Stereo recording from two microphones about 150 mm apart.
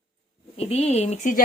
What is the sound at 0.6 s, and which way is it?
Speech, 45° left (ahead or behind).